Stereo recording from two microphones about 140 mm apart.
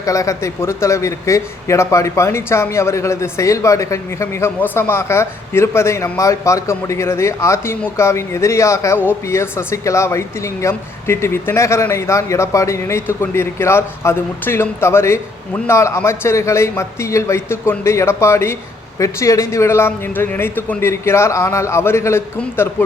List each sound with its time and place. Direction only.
0.0 s speech: 20° left (ahead or behind)